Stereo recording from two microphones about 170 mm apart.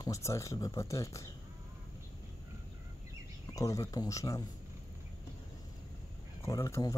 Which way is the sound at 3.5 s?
20° left (ahead or behind).